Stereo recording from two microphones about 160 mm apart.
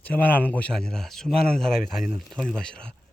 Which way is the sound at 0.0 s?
10° left (ahead or behind).